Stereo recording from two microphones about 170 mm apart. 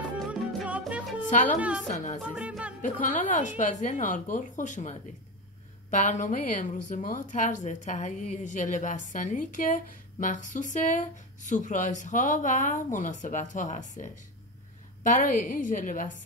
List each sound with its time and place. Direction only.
0.2 s music: centre (ahead or behind)
1.9 s speech: 50° left (ahead or behind)
2.3 s music: 5° right (ahead or behind)
2.8 s speech: 50° left (ahead or behind)